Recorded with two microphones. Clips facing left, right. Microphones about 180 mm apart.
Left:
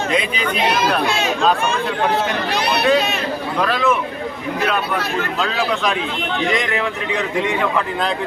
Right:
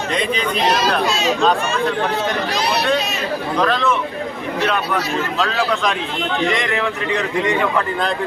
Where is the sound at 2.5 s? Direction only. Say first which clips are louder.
Even; 60° left (ahead or behind).